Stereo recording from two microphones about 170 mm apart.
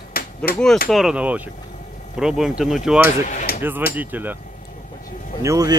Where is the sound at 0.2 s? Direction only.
60° left (ahead or behind).